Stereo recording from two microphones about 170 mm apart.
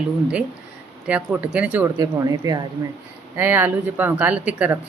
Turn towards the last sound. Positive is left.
turn(degrees=-10)  # may be behind; listen again after turning